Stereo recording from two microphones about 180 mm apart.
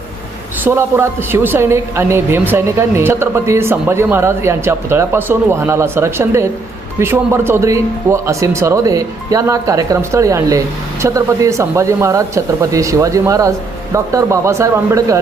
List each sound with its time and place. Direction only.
0.6 s a woman's voice: 15° right (ahead or behind)